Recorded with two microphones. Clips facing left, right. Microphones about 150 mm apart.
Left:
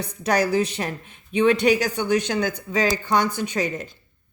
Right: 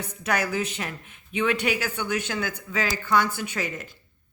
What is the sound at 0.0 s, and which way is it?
A woman's voice, 35° left (ahead or behind).